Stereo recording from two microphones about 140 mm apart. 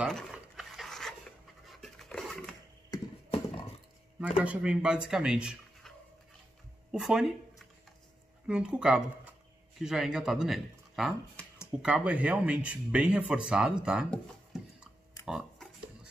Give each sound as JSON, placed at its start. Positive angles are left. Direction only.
{"t": 0.0, "sound": "pant", "side_deg": 0}
{"t": 4.4, "sound": "speech", "side_deg": -10}
{"t": 11.3, "sound": "a sound", "side_deg": 20}
{"t": 11.8, "sound": "speech", "side_deg": -10}
{"t": 14.1, "sound": "tick-tock", "side_deg": -5}